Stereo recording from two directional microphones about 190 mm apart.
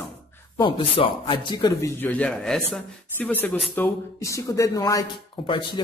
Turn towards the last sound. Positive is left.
turn(degrees=25)  # may be behind; listen again after turning